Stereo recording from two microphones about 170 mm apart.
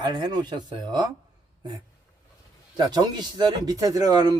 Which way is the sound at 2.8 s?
25° right (ahead or behind).